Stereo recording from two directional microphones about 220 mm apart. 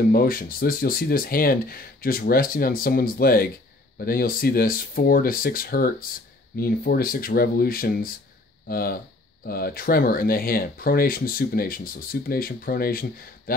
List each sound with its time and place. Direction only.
0.1 s speech: 40° left (ahead or behind)